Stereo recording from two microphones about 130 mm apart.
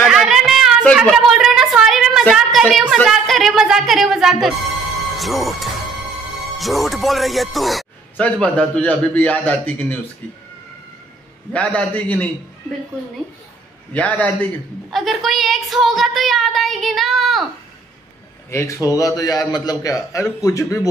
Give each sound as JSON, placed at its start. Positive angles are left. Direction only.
{"t": 0.1, "sound": "a sound", "side_deg": -5}
{"t": 5.1, "sound": "speech", "side_deg": 0}
{"t": 11.5, "sound": "speech", "side_deg": 10}
{"t": 13.9, "sound": "speech", "side_deg": 10}
{"t": 14.9, "sound": "a woman's voice", "side_deg": 0}
{"t": 18.5, "sound": "a man's voice", "side_deg": 25}